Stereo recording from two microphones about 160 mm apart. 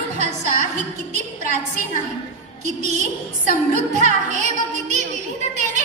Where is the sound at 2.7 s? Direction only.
45° right (ahead or behind).